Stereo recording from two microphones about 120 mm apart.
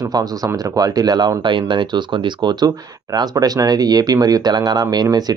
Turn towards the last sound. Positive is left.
turn(degrees=-35)  # may be behind; listen again after turning